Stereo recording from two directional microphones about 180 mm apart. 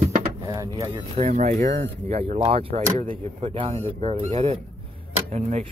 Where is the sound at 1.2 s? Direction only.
45° right (ahead or behind).